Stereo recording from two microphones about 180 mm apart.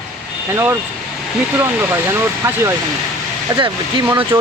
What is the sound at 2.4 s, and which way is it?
Speech, 15° right (ahead or behind).